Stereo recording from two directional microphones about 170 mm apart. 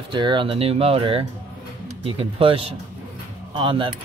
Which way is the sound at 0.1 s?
25° right (ahead or behind).